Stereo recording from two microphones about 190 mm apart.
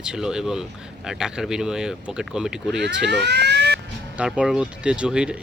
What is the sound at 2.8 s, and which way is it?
Speech, 65° right (ahead or behind).